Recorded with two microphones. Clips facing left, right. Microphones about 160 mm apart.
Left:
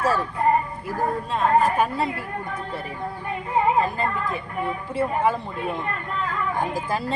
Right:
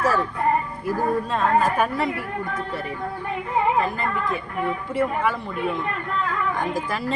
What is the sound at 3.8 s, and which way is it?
A woman's voice, 30° left (ahead or behind).